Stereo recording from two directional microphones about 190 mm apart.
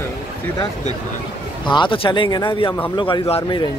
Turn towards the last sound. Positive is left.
turn(degrees=20)  # may be behind; listen again after turning